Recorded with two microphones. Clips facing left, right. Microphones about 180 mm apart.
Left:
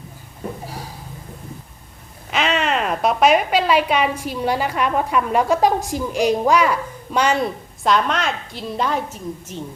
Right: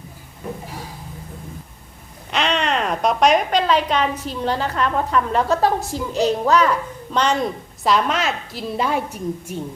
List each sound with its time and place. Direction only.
2.3 s a woman's voice: 5° left (ahead or behind); by 9.6 s 10° right (ahead or behind)